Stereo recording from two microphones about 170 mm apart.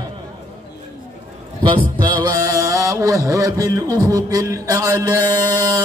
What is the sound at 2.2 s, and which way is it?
Music, 20° right (ahead or behind).